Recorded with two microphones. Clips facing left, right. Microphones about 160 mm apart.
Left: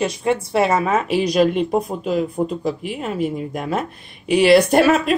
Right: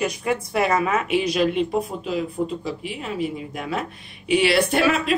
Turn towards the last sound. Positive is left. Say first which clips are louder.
# left 5 dB
turn(degrees=40)  # may be behind; listen again after turning